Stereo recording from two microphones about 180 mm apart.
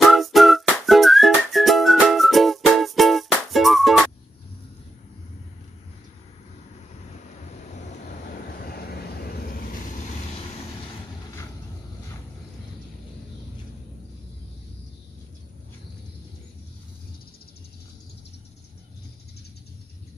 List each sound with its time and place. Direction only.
0.0 s whistling: centre (ahead or behind)
8.4 s vehicle: 55° left (ahead or behind)